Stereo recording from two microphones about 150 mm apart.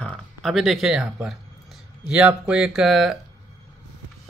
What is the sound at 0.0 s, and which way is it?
Speech, 5° left (ahead or behind).